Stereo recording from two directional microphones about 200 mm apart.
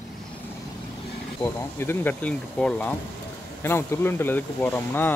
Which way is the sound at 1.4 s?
10° left (ahead or behind).